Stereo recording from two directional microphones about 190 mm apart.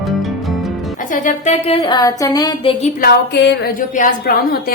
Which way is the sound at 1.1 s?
45° left (ahead or behind).